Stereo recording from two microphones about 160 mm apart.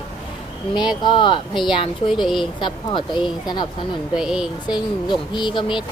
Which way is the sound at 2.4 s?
30° left (ahead or behind).